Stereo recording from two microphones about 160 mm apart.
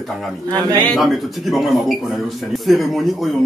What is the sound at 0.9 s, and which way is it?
Speech, centre (ahead or behind).